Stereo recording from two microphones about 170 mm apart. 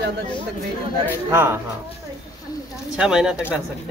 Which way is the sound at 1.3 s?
15° right (ahead or behind).